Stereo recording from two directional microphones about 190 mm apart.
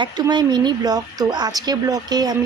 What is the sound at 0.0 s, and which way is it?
Speech, 20° right (ahead or behind).